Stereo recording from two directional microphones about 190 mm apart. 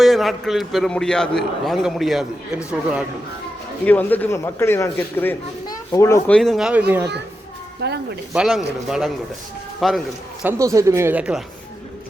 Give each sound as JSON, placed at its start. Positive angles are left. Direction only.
{"t": 0.0, "sound": "a man's voice", "side_deg": 0}
{"t": 3.8, "sound": "a man's voice", "side_deg": 10}
{"t": 5.6, "sound": "children playing", "side_deg": 15}
{"t": 6.2, "sound": "a man's voice", "side_deg": 5}
{"t": 7.8, "sound": "speech", "side_deg": -60}
{"t": 8.3, "sound": "a man's voice", "side_deg": 0}
{"t": 10.4, "sound": "speech", "side_deg": -15}